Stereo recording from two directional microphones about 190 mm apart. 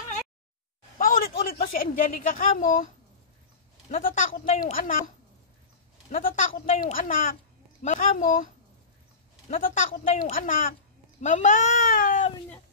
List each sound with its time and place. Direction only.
0.9 s a sound: 45° left (ahead or behind)
1.5 s speech: 45° left (ahead or behind)
3.9 s speech: 40° left (ahead or behind)
9.5 s a woman's voice: 45° left (ahead or behind)